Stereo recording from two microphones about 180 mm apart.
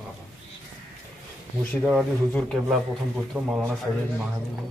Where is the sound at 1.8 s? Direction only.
5° left (ahead or behind).